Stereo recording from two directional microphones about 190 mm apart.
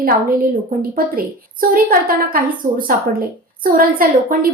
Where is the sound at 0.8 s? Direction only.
50° right (ahead or behind).